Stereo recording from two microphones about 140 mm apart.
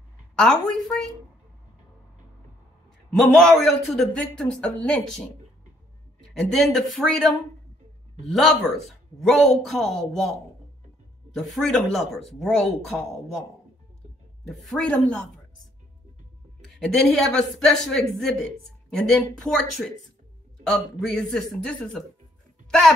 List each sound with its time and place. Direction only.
0.4 s speech: 5° left (ahead or behind)
3.2 s speech: 5° left (ahead or behind)
6.3 s speech: centre (ahead or behind)
8.3 s speech: centre (ahead or behind)
11.3 s speech: centre (ahead or behind)
14.5 s speech: centre (ahead or behind)
16.7 s speech: 5° left (ahead or behind)